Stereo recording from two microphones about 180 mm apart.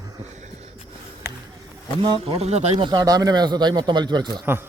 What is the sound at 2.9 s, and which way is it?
Speech, 25° right (ahead or behind).